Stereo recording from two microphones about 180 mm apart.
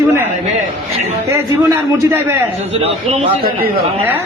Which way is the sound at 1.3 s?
15° right (ahead or behind).